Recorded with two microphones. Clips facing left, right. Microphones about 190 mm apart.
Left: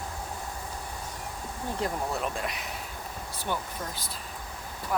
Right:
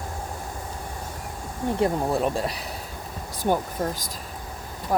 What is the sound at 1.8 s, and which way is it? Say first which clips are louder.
Speech: right 8 dB; 30° right (ahead or behind).